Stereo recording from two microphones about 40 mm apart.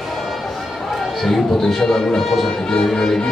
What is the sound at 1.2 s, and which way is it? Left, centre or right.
Speech, centre.